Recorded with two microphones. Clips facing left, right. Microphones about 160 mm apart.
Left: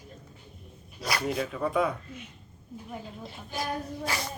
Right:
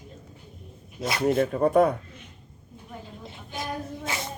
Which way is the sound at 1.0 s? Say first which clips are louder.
Right 2 dB; 20° right (ahead or behind).